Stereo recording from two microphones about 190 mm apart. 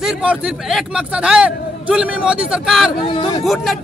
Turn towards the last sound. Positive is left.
turn(degrees=0)  # may be behind; listen again after turning